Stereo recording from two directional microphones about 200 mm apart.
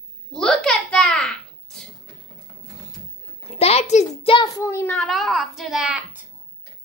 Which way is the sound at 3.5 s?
30° left (ahead or behind).